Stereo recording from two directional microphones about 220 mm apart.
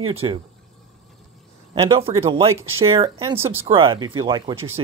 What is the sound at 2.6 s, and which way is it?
Speech, 10° right (ahead or behind).